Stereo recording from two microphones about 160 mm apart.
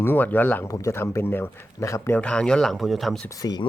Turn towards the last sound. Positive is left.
turn(degrees=25)  # may be behind; listen again after turning